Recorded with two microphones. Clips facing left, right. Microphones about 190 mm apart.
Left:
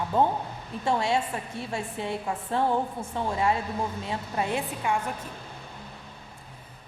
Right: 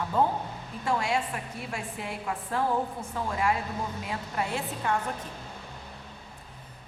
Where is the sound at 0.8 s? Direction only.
25° left (ahead or behind).